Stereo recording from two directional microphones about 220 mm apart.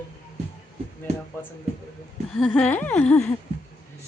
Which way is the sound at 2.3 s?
5° left (ahead or behind).